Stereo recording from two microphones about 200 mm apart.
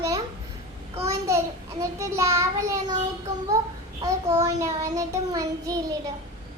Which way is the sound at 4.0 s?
15° right (ahead or behind).